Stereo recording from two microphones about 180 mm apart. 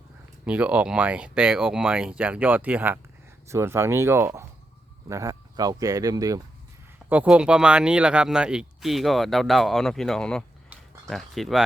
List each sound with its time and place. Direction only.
0.4 s speech: 5° right (ahead or behind)
7.1 s speech: 5° right (ahead or behind)